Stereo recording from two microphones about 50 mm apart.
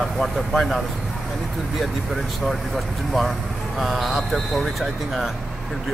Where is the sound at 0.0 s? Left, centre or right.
Centre.